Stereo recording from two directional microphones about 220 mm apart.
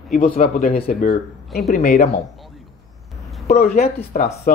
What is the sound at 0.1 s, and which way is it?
Speech, 40° left (ahead or behind).